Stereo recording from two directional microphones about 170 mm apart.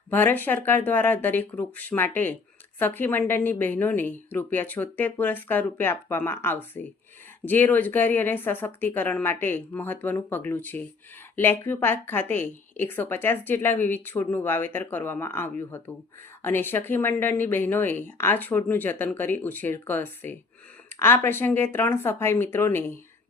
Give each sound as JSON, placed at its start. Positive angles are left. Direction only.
{"t": 0.1, "sound": "a woman's voice", "side_deg": 10}